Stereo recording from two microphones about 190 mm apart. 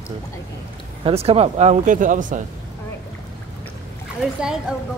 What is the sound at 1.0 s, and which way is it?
Speech, 30° right (ahead or behind).